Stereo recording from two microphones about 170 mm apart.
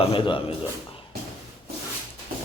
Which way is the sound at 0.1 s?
30° left (ahead or behind).